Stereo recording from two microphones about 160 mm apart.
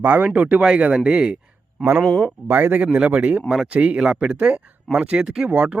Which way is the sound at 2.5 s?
10° right (ahead or behind).